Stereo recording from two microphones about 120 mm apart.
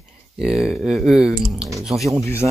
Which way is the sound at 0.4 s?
5° right (ahead or behind).